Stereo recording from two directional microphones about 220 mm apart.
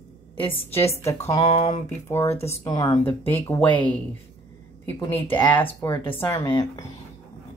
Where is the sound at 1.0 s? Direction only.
25° left (ahead or behind).